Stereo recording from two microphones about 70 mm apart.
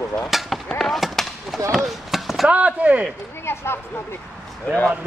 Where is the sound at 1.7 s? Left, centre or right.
Centre.